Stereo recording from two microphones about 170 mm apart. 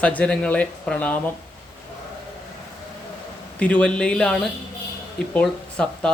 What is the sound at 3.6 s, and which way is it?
Speech, 10° left (ahead or behind).